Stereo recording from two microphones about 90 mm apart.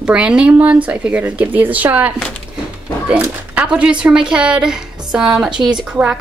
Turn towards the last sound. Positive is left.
turn(degrees=-10)  # may be behind; listen again after turning